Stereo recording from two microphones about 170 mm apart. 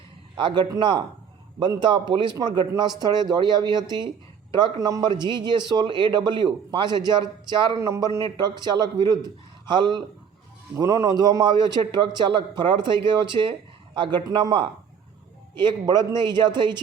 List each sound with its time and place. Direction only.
0.3 s a man's voice: 30° right (ahead or behind)